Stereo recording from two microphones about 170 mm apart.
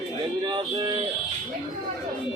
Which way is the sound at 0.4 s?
25° right (ahead or behind).